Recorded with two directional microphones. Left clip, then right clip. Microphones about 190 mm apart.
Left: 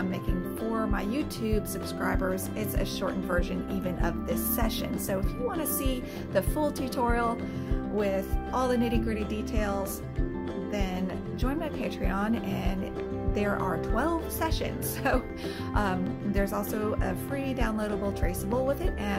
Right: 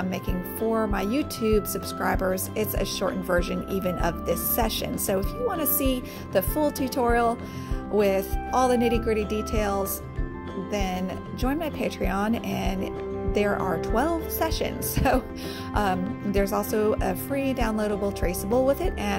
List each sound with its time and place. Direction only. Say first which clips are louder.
0.7 s speech: right 3 dB; 40° right (ahead or behind)